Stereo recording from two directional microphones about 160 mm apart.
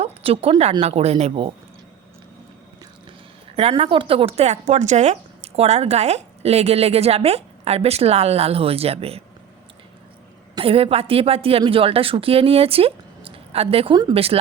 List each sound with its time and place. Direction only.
0.0 s speech: 35° right (ahead or behind)
3.5 s speech: 35° right (ahead or behind)
10.5 s speech: 35° right (ahead or behind)